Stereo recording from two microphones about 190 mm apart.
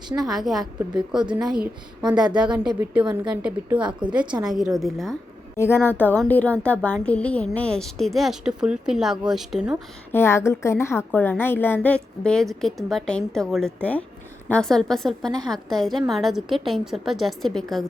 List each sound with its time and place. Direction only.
0.3 s a woman's voice: centre (ahead or behind)
1.2 s a woman's voice: 25° right (ahead or behind)
2.1 s a woman's voice: 5° right (ahead or behind)
5.5 s a woman's voice: 10° left (ahead or behind)
10.1 s a woman's voice: 10° left (ahead or behind)